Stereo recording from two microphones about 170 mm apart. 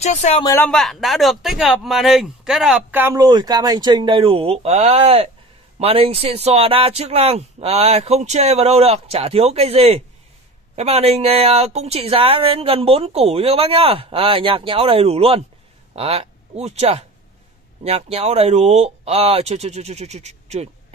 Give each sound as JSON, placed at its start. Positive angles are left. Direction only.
{"t": 0.0, "sound": "speech", "side_deg": 40}
{"t": 0.6, "sound": "speech", "side_deg": 5}
{"t": 3.2, "sound": "speech", "side_deg": -25}